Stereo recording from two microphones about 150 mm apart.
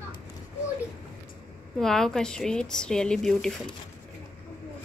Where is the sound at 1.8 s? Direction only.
5° left (ahead or behind).